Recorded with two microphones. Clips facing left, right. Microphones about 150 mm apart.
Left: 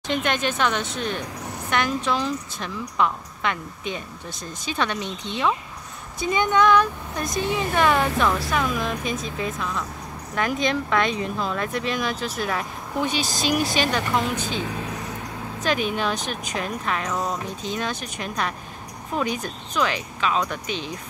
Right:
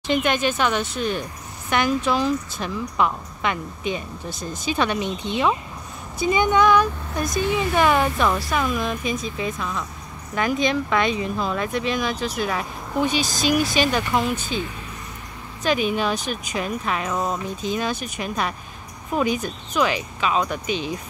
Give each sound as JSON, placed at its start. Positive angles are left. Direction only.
{"t": 0.1, "sound": "a woman's voice", "side_deg": -5}
{"t": 14.3, "sound": "speech", "side_deg": 85}
{"t": 15.6, "sound": "a woman's voice", "side_deg": -5}